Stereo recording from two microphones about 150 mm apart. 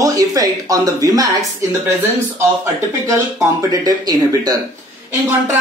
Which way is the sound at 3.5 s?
25° right (ahead or behind).